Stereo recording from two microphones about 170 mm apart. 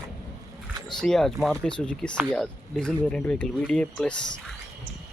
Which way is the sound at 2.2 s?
5° right (ahead or behind).